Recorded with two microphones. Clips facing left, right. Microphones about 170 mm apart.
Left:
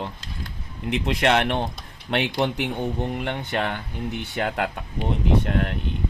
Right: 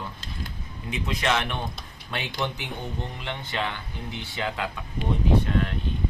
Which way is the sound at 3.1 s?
50° left (ahead or behind).